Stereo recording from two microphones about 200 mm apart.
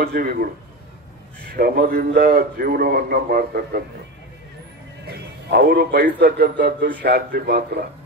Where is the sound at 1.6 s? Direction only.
50° right (ahead or behind).